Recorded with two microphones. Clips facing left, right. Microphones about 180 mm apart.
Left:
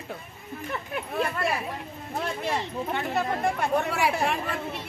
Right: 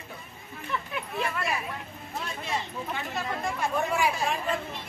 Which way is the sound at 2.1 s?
60° left (ahead or behind).